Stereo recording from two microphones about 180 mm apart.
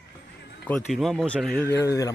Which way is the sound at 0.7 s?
Centre (ahead or behind).